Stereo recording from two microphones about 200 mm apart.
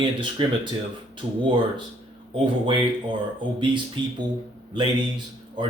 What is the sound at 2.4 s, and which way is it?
A man's voice, 25° right (ahead or behind).